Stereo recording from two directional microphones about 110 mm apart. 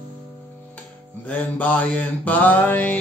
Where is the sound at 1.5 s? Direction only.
15° left (ahead or behind).